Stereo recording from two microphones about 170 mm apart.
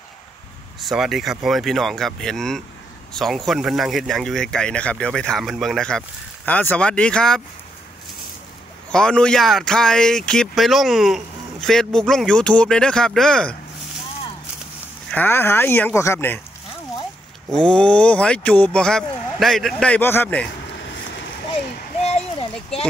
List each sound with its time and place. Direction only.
0.7 s speech: centre (ahead or behind)
8.9 s speech: 5° left (ahead or behind)
15.0 s speech: 10° left (ahead or behind)
17.5 s speech: 5° left (ahead or behind)
22.0 s a sound: 35° left (ahead or behind)